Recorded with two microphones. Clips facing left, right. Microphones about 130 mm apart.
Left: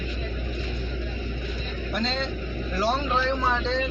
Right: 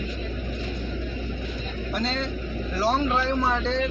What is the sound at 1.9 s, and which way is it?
Speech, 5° right (ahead or behind).